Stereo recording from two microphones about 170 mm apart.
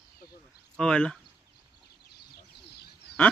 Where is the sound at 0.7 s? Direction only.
5° left (ahead or behind).